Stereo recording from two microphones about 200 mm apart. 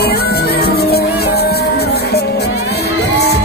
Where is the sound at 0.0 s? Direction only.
50° left (ahead or behind).